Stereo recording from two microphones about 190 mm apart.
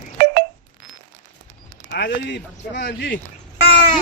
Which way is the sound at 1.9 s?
60° left (ahead or behind).